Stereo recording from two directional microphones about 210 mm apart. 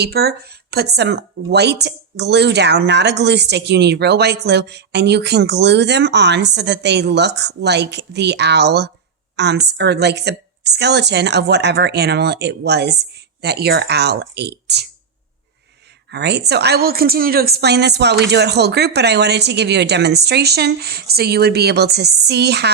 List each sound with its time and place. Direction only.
0.0 s speech: 50° right (ahead or behind)
16.1 s speech: 50° right (ahead or behind)